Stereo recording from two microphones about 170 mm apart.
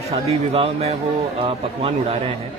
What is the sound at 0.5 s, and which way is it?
Speech, 35° right (ahead or behind).